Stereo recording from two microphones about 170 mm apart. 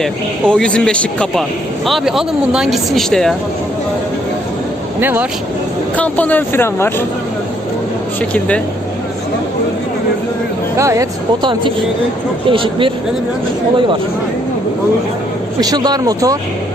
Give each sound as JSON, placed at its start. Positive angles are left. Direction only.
{"t": 0.0, "sound": "speech", "side_deg": 5}
{"t": 4.9, "sound": "speech", "side_deg": -10}
{"t": 6.0, "sound": "speech", "side_deg": 10}
{"t": 8.3, "sound": "speech", "side_deg": 5}
{"t": 10.8, "sound": "speech", "side_deg": -20}
{"t": 15.6, "sound": "speech", "side_deg": -25}